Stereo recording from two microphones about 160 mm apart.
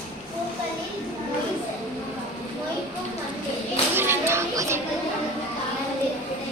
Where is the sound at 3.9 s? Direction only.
15° right (ahead or behind).